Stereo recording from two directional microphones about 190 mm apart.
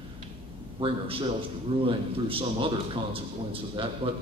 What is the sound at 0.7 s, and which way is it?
A man's voice, 30° right (ahead or behind).